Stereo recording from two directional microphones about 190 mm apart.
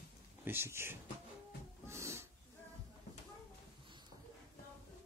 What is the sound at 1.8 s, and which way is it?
Snort, 15° right (ahead or behind).